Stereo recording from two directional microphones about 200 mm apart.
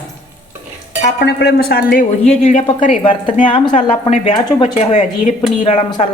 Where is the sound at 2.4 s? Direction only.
35° left (ahead or behind).